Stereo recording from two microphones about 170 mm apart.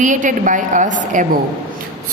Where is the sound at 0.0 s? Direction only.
50° right (ahead or behind).